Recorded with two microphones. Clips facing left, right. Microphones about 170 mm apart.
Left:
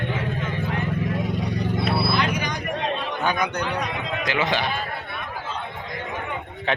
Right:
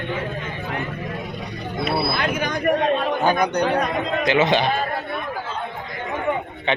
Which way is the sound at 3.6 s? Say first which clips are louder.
Right 7 dB; 55° right (ahead or behind).